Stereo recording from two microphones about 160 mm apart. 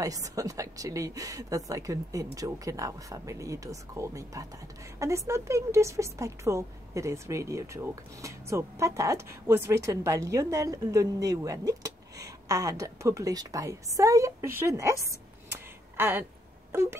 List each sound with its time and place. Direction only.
0.0 s a woman's voice: 20° right (ahead or behind)
16.0 s speech: 15° right (ahead or behind)